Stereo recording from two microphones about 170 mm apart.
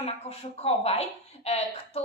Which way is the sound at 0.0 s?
35° left (ahead or behind).